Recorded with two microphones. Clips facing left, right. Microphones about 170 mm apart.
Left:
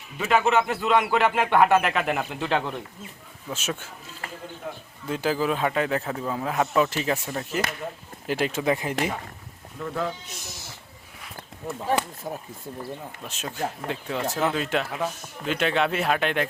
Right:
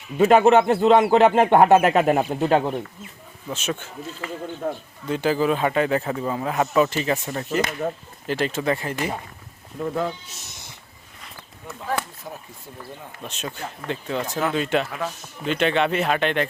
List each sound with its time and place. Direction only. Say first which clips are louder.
0.2 s a man's voice: right 7 dB; 45° right (ahead or behind)
3.5 s speech: right 3 dB; 5° left (ahead or behind)
4.6 s a man's voice: right 9 dB; 45° right (ahead or behind)
5.0 s speech: right 4 dB; centre (ahead or behind)
11.9 s speech: left 2 dB; 15° left (ahead or behind)
13.2 s speech: left 2 dB; 5° left (ahead or behind)